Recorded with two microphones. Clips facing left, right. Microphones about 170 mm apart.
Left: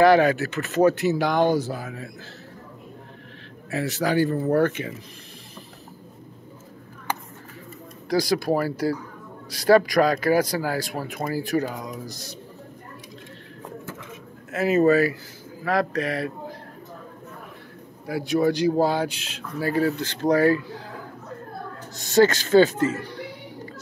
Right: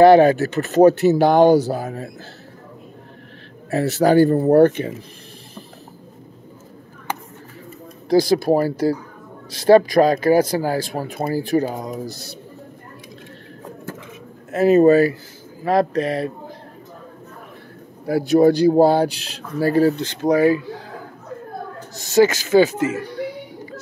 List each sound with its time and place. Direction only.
0.0 s speech: 30° right (ahead or behind)
3.7 s speech: 40° right (ahead or behind)
8.1 s speech: 25° right (ahead or behind)
14.5 s speech: 30° right (ahead or behind)
18.0 s speech: 40° right (ahead or behind)
20.0 s speech: 15° right (ahead or behind)
22.1 s speech: 10° right (ahead or behind)
22.7 s speech: 20° right (ahead or behind)